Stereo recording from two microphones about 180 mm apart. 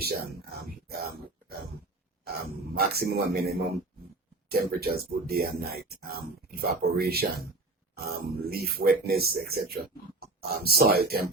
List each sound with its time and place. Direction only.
2.7 s speech: 60° right (ahead or behind)